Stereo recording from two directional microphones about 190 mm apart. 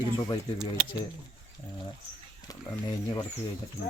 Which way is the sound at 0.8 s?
10° right (ahead or behind).